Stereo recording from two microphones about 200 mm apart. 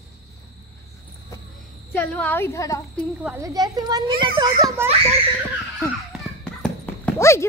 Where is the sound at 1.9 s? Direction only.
10° left (ahead or behind).